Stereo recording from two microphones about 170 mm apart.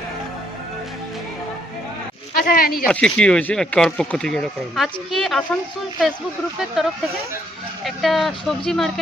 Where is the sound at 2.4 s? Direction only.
60° left (ahead or behind).